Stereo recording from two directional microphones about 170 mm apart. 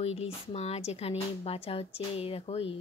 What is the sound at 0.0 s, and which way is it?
Speech, 35° left (ahead or behind).